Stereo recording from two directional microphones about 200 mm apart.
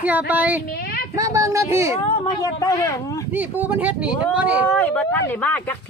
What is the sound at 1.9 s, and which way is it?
Speech, 30° left (ahead or behind).